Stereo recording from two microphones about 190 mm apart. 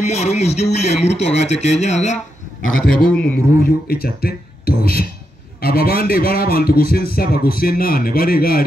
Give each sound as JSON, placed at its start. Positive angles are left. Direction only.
{"t": 0.0, "sound": "speech", "side_deg": 35}
{"t": 3.1, "sound": "a man's voice", "side_deg": 5}
{"t": 3.6, "sound": "speech", "side_deg": 55}